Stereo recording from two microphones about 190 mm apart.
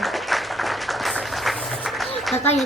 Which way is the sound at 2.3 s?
35° left (ahead or behind).